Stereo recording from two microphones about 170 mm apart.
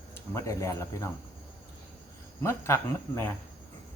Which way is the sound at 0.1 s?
15° left (ahead or behind).